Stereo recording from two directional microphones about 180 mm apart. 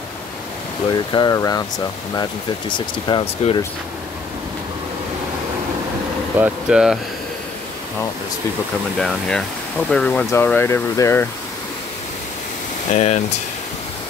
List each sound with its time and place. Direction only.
0.9 s speech: 25° left (ahead or behind)
2.7 s speech: 25° left (ahead or behind)
6.3 s speech: 5° right (ahead or behind)
8.9 s speech: 5° left (ahead or behind)
12.9 s speech: 40° left (ahead or behind)